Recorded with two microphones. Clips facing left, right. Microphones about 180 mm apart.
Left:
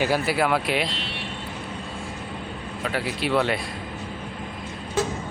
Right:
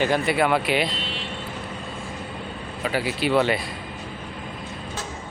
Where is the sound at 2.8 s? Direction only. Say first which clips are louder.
Right 3 dB; centre (ahead or behind).